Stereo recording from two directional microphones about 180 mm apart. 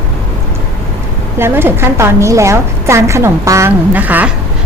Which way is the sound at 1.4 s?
15° right (ahead or behind).